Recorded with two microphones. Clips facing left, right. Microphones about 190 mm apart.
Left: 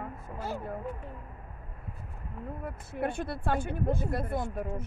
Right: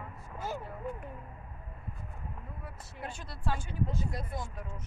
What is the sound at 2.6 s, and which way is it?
Speech, 55° left (ahead or behind).